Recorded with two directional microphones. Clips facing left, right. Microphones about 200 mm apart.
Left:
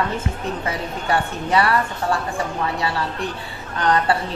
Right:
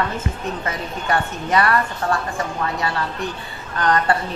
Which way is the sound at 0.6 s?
15° left (ahead or behind).